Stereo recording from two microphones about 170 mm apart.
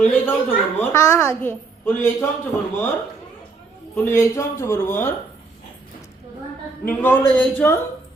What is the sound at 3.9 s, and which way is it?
A woman's voice, 15° left (ahead or behind).